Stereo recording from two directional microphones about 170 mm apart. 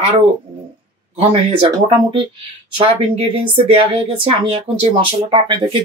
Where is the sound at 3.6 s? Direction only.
35° right (ahead or behind).